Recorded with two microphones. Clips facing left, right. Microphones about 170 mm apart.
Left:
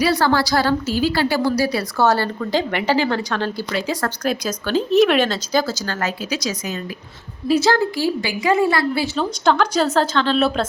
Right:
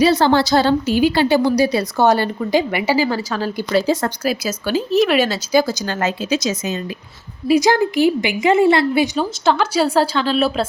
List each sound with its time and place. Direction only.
0.0 s a woman's voice: 25° right (ahead or behind); by 3.5 s 5° right (ahead or behind)
3.7 s a woman's voice: 30° right (ahead or behind)
4.2 s a woman's voice: 5° right (ahead or behind); by 6.7 s 25° right (ahead or behind)
7.4 s a woman's voice: 15° right (ahead or behind)
9.1 s a woman's voice: 5° right (ahead or behind)